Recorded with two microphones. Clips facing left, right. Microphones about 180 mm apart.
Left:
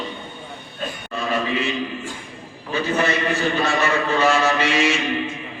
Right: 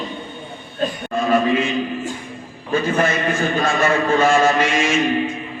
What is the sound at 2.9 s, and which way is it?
A man's voice, 45° right (ahead or behind).